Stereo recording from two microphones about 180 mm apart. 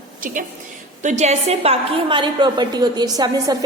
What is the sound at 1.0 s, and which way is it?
A woman's voice, 40° right (ahead or behind).